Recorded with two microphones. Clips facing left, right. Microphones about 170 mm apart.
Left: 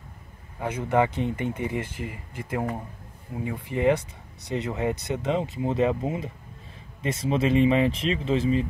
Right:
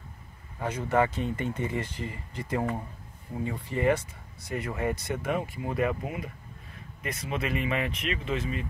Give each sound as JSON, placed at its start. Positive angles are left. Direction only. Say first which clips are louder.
{"t": 0.6, "sound": "speech", "louder": "left 2 dB", "side_deg": 15}